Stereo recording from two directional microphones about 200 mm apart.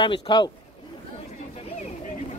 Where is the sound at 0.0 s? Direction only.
25° left (ahead or behind).